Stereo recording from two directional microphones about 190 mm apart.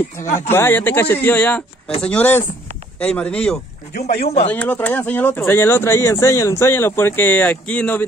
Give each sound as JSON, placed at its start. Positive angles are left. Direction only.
{"t": 0.5, "sound": "speech", "side_deg": 10}
{"t": 3.9, "sound": "a man's voice", "side_deg": 35}
{"t": 4.5, "sound": "speech", "side_deg": 10}